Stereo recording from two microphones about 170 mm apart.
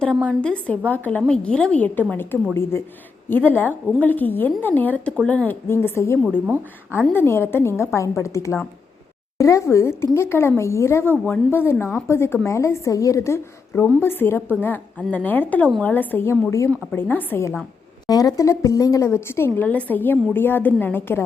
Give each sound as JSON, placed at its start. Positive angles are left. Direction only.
{"t": 0.4, "sound": "a woman's voice", "side_deg": 5}